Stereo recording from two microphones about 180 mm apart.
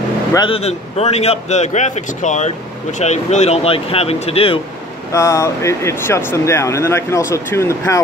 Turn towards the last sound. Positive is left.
turn(degrees=15)  # may be behind; listen again after turning